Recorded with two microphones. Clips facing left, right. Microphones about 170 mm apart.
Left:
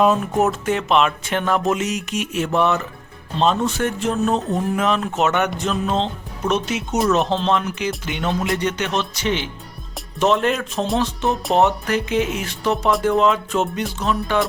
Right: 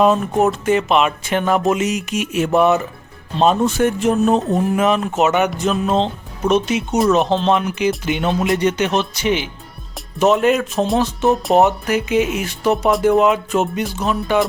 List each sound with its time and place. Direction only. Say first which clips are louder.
0.0 s music: right 2 dB; 5° left (ahead or behind)
3.4 s speech: right 4 dB; 10° right (ahead or behind)
6.5 s music: right 5 dB; centre (ahead or behind)
8.0 s speech: right 4 dB; 15° right (ahead or behind)